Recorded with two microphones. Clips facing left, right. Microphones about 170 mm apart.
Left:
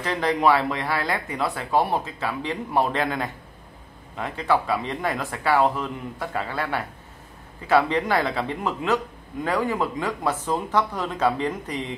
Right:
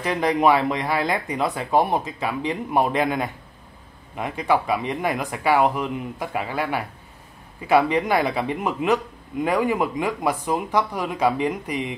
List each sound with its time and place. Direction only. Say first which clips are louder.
0.0 s speech: right 2 dB; 15° right (ahead or behind)